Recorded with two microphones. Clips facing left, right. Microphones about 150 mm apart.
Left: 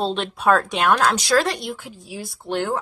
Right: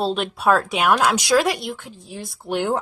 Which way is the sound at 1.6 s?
5° left (ahead or behind).